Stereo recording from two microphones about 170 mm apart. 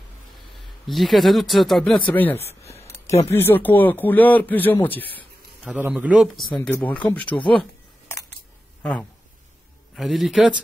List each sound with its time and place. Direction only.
0.6 s speech: centre (ahead or behind)
2.3 s a sound: 35° left (ahead or behind)
3.3 s speech: 15° left (ahead or behind)
5.6 s speech: 5° right (ahead or behind)
9.9 s speech: centre (ahead or behind)